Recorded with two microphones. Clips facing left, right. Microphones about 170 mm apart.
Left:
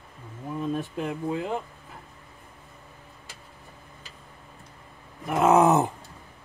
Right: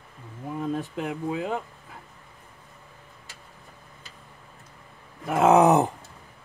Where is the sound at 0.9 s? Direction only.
15° right (ahead or behind).